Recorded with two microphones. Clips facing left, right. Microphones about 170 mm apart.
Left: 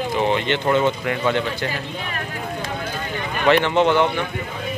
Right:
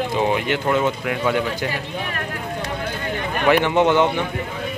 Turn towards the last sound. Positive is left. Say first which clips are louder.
# right 1 dB
turn(degrees=-15)  # may be behind; listen again after turning